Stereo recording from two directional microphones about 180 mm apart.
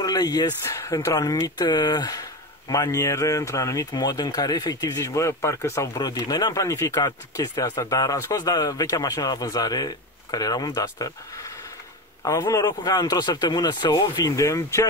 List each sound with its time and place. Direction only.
0.0 s speech: 20° left (ahead or behind)